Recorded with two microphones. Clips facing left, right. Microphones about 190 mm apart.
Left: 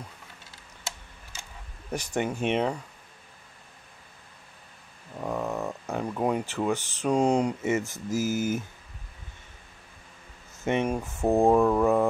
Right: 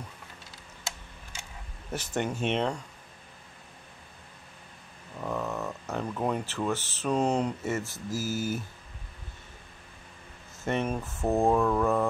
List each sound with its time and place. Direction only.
1.9 s speech: 10° left (ahead or behind)
5.2 s speech: 15° left (ahead or behind)
10.6 s speech: 15° left (ahead or behind)